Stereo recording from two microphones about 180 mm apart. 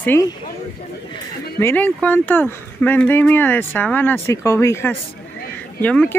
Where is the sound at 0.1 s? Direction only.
15° left (ahead or behind).